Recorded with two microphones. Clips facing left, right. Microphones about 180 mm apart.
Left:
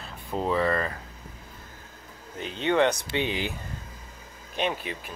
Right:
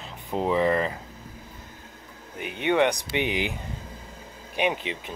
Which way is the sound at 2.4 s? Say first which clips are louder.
Right 1 dB; 15° right (ahead or behind).